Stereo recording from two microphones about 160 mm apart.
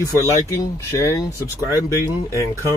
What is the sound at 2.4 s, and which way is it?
Speech, 20° left (ahead or behind).